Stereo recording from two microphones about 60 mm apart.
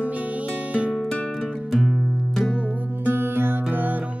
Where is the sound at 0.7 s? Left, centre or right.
Centre.